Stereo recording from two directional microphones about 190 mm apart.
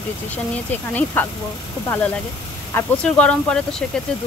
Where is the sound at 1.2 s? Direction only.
10° left (ahead or behind).